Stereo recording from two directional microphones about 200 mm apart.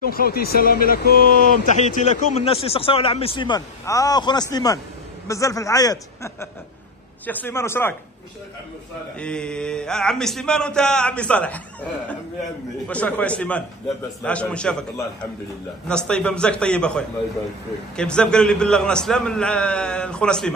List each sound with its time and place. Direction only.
0.1 s speech: 50° left (ahead or behind)
1.8 s a man's voice: 35° left (ahead or behind); by 7.9 s 10° left (ahead or behind)
9.2 s a man's voice: 5° left (ahead or behind)
15.9 s a man's voice: 5° left (ahead or behind)